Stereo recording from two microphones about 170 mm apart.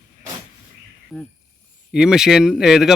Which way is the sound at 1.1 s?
Centre (ahead or behind).